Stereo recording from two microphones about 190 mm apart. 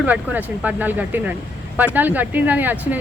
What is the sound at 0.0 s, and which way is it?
Speech, 10° right (ahead or behind).